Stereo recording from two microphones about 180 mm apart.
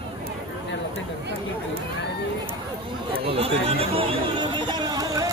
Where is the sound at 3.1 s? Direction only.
30° right (ahead or behind).